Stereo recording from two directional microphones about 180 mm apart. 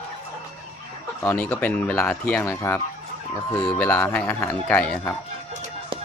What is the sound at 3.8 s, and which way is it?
Speech, 10° left (ahead or behind).